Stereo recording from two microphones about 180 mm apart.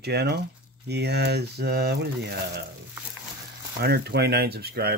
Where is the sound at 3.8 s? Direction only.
65° right (ahead or behind).